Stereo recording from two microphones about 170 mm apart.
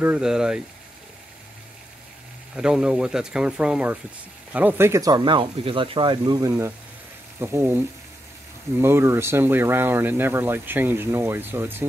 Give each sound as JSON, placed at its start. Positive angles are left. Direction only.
{"t": 0.0, "sound": "speech", "side_deg": -5}
{"t": 2.5, "sound": "speech", "side_deg": -5}
{"t": 8.8, "sound": "speech", "side_deg": -15}